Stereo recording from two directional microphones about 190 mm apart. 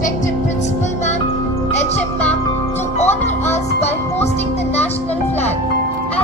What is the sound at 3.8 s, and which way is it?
Music, 35° left (ahead or behind).